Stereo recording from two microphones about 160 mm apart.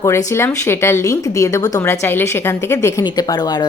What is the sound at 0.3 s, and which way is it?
A woman's voice, 15° left (ahead or behind).